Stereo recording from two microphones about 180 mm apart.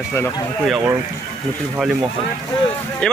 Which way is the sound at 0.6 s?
5° right (ahead or behind).